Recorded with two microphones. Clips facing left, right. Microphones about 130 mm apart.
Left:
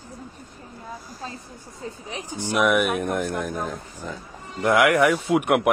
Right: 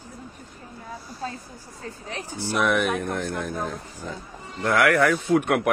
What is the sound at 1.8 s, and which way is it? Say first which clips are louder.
Speech: left 1 dB; 15° left (ahead or behind).